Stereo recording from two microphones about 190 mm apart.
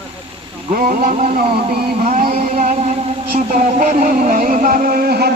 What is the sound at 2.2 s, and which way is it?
Music, 30° right (ahead or behind).